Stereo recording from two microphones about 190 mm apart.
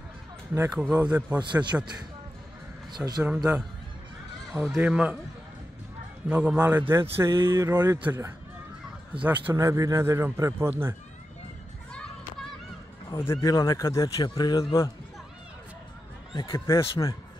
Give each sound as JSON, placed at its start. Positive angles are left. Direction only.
{"t": 0.6, "sound": "a man's voice", "side_deg": -5}
{"t": 1.4, "sound": "a man's voice", "side_deg": -25}
{"t": 3.2, "sound": "speech", "side_deg": -5}
{"t": 4.5, "sound": "speech", "side_deg": 0}
{"t": 6.2, "sound": "a man's voice", "side_deg": -5}
{"t": 13.1, "sound": "speech", "side_deg": 15}
{"t": 16.5, "sound": "speech", "side_deg": 15}